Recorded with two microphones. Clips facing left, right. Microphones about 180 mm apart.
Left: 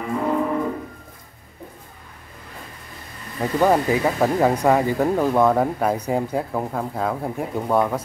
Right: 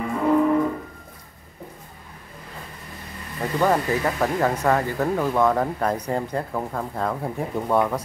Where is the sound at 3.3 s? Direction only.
15° left (ahead or behind).